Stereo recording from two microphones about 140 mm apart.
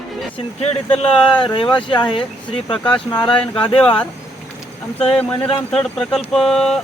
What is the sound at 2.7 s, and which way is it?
Speech, 5° left (ahead or behind).